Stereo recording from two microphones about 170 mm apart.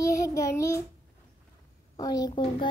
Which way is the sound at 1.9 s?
20° left (ahead or behind).